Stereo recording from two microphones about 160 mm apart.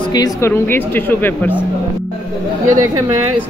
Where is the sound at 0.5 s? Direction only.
15° left (ahead or behind).